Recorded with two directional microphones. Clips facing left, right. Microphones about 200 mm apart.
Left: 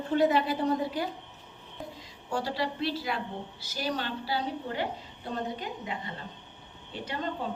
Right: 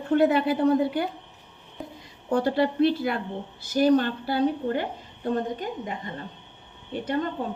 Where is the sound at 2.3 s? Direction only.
55° right (ahead or behind).